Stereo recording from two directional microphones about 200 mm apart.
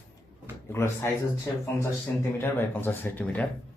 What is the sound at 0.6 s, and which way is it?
Speech, 15° left (ahead or behind).